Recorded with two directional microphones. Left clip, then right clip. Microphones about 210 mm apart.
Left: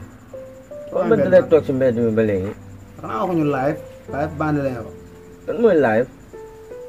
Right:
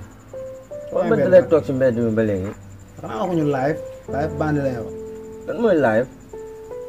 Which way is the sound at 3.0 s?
20° right (ahead or behind).